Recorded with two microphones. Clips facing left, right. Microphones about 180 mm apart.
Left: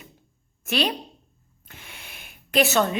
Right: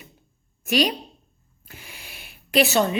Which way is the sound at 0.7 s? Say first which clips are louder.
Right 3 dB; 10° right (ahead or behind).